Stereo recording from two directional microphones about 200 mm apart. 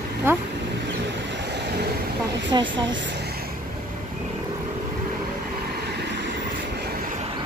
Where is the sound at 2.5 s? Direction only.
20° right (ahead or behind).